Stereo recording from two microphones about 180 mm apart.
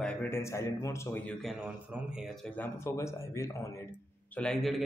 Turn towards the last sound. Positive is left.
turn(degrees=5)  # may be behind; listen again after turning